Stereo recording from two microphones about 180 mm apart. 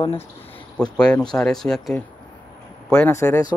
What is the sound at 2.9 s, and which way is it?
Speech, 15° left (ahead or behind).